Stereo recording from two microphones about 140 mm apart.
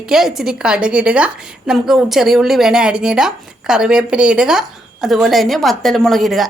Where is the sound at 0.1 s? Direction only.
5° right (ahead or behind).